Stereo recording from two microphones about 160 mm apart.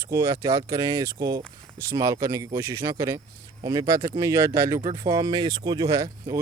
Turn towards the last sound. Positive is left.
turn(degrees=-25)  # may be behind; listen again after turning